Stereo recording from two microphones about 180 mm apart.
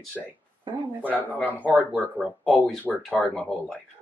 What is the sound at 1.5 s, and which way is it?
Speech, 10° right (ahead or behind).